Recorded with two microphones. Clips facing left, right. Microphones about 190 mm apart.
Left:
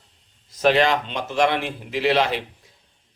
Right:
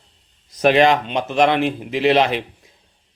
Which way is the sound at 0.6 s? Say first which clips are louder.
Right 4 dB; 15° right (ahead or behind).